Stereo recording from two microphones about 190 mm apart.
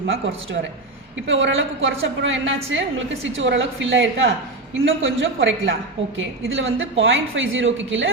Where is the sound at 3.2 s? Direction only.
75° right (ahead or behind).